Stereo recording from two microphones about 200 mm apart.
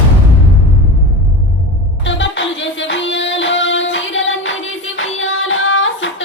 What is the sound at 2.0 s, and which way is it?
Music, 65° left (ahead or behind).